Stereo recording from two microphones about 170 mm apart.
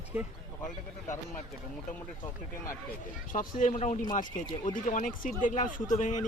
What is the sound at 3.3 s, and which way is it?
Speech, 50° left (ahead or behind).